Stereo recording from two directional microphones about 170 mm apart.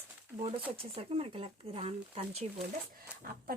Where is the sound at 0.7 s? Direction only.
35° right (ahead or behind).